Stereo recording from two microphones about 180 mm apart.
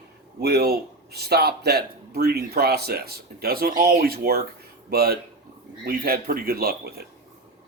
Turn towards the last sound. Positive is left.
turn(degrees=-55)  # may be behind; listen again after turning